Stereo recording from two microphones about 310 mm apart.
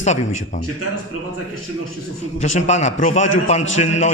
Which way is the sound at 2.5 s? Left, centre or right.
Left.